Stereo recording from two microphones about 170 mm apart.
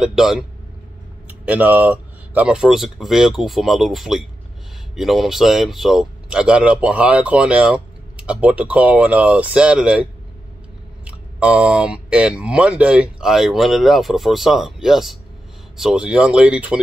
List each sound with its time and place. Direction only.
0.0 s speech: 5° right (ahead or behind)
11.1 s speech: 5° right (ahead or behind)